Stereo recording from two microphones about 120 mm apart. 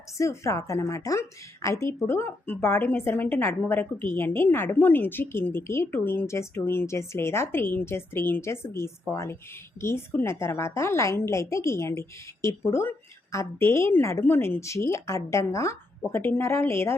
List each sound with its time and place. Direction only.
0.2 s a woman's voice: 25° left (ahead or behind)